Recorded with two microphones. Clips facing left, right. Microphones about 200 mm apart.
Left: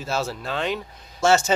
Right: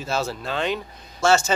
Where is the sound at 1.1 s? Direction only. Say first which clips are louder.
Even; 20° left (ahead or behind).